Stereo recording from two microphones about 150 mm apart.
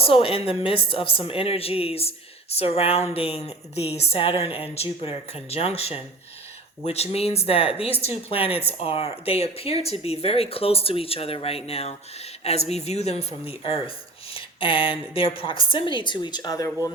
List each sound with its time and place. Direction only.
0.0 s a woman's voice: 40° left (ahead or behind); by 16.9 s 25° left (ahead or behind)